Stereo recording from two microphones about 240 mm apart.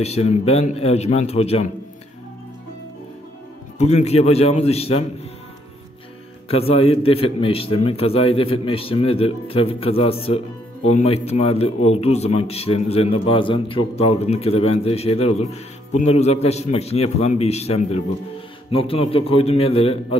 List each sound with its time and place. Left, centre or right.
0.0 s a man's voice: left
3.7 s a man's voice: left
6.5 s a man's voice: left